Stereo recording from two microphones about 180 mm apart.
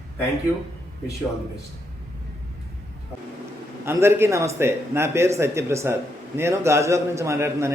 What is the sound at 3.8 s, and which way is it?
A man's voice, 15° right (ahead or behind).